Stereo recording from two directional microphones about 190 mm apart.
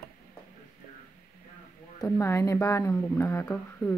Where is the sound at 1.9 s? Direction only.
15° left (ahead or behind).